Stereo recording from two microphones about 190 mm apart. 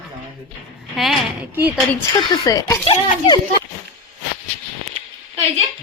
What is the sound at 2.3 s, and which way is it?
Speech, 20° left (ahead or behind).